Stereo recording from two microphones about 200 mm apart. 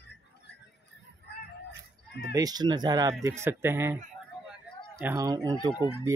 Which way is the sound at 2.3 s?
20° right (ahead or behind).